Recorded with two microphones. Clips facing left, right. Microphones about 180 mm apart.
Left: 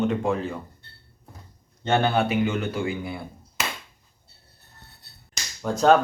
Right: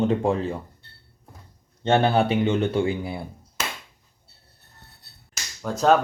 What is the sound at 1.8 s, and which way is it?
Speech, 30° right (ahead or behind).